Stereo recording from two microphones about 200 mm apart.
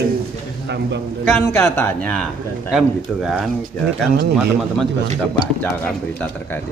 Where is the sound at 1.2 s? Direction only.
10° left (ahead or behind).